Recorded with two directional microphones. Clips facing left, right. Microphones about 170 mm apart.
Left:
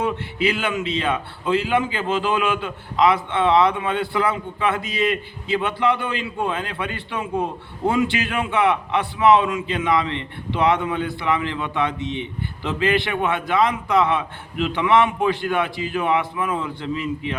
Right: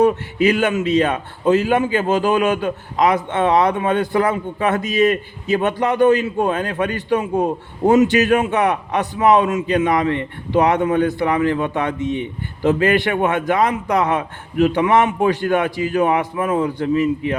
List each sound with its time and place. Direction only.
0.0 s a man's voice: 45° right (ahead or behind)